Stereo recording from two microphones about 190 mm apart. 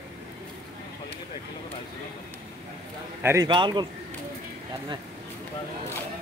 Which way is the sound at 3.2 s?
15° right (ahead or behind).